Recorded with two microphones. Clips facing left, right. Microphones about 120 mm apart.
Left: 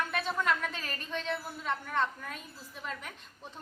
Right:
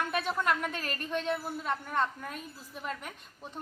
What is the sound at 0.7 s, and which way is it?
Speech, 55° right (ahead or behind).